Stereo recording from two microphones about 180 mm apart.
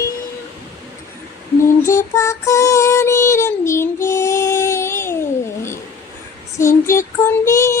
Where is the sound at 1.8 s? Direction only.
15° left (ahead or behind).